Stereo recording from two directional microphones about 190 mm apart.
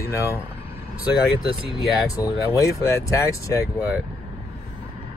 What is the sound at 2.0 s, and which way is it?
Speech, 15° left (ahead or behind).